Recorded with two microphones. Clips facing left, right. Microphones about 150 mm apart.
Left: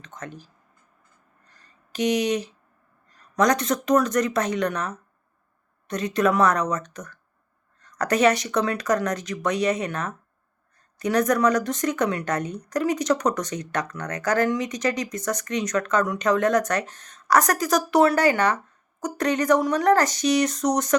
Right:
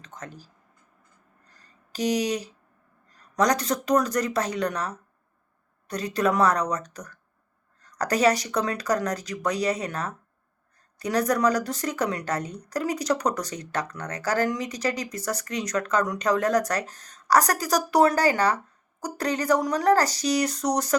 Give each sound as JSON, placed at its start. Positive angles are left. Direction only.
{"t": 0.2, "sound": "speech", "side_deg": -35}
{"t": 1.5, "sound": "a sound", "side_deg": -35}
{"t": 3.3, "sound": "speech", "side_deg": -35}